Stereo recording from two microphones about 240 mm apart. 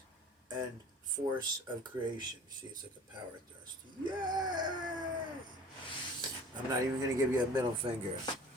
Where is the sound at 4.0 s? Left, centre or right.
Centre.